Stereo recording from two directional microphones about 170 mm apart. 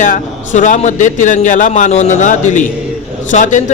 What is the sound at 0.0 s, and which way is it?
Speech, 50° left (ahead or behind).